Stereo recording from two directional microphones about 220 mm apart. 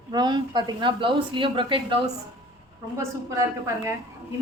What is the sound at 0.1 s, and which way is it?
A woman's voice, 20° right (ahead or behind).